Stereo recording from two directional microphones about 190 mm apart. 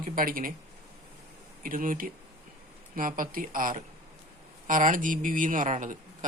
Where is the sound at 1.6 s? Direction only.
45° right (ahead or behind).